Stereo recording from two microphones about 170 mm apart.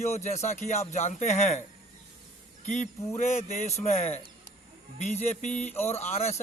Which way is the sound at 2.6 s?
45° left (ahead or behind).